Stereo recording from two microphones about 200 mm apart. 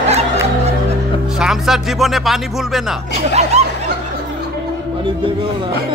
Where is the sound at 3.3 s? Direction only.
35° right (ahead or behind).